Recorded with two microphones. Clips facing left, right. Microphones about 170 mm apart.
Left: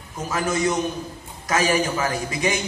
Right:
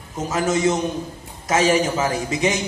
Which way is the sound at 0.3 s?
25° right (ahead or behind).